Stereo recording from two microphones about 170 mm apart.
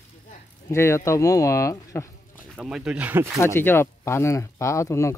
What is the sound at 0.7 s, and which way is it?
Speech, 15° left (ahead or behind).